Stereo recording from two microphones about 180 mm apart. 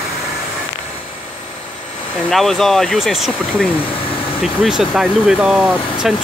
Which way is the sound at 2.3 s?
Centre (ahead or behind).